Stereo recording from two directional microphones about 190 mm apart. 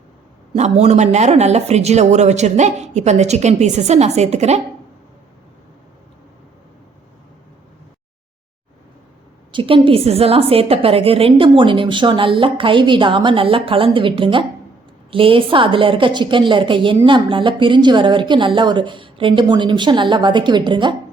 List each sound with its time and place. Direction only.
0.5 s speech: 35° right (ahead or behind)
9.5 s a woman's voice: 25° right (ahead or behind)